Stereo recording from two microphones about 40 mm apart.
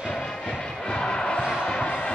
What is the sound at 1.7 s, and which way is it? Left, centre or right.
Basketball bounce, left.